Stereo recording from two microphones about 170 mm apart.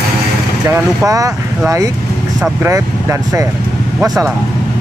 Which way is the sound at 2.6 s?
15° right (ahead or behind).